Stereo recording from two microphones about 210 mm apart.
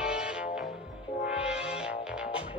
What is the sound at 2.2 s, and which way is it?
Music, 25° left (ahead or behind).